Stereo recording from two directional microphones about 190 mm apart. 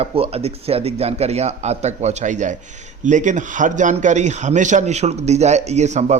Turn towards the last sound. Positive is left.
turn(degrees=-35)  # may be behind; listen again after turning